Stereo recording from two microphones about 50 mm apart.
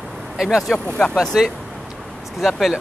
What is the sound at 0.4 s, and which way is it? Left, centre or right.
Speech, centre.